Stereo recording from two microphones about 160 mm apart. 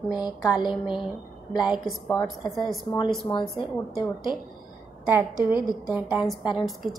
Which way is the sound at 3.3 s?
35° left (ahead or behind).